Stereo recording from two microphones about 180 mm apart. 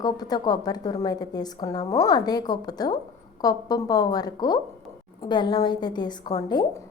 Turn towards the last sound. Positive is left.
turn(degrees=20)  # may be behind; listen again after turning